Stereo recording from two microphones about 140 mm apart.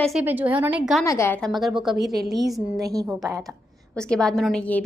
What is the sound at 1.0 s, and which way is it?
Speech, 20° left (ahead or behind).